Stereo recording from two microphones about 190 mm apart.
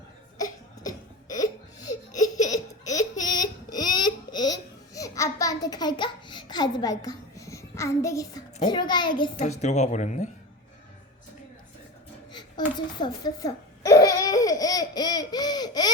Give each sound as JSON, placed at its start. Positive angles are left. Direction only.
{"t": 2.2, "sound": "a sound", "side_deg": 20}
{"t": 8.6, "sound": "a child's voice", "side_deg": 25}
{"t": 9.4, "sound": "speech", "side_deg": 35}
{"t": 12.3, "sound": "babbling", "side_deg": 20}